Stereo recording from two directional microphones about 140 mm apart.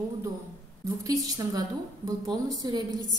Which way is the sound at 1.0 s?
25° right (ahead or behind).